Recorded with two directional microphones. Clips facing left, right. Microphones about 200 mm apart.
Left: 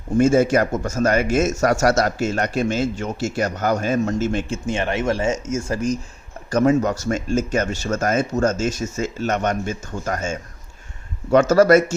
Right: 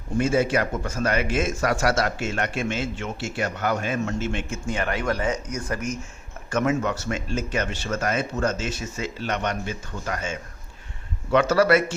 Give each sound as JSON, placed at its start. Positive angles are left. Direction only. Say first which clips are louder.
{"t": 0.2, "sound": "speech", "louder": "left 6 dB", "side_deg": 45}